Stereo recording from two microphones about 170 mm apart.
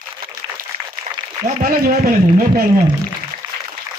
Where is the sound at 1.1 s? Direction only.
50° right (ahead or behind).